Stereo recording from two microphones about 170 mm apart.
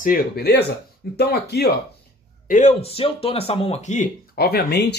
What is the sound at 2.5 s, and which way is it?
Speech, 45° left (ahead or behind).